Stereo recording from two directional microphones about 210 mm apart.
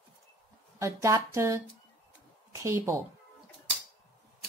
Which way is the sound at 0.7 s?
15° right (ahead or behind).